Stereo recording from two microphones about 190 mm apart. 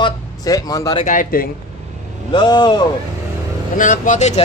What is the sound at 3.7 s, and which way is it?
Speech, 45° left (ahead or behind).